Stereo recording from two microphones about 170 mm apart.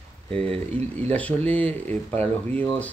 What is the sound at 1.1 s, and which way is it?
Speech, 10° left (ahead or behind).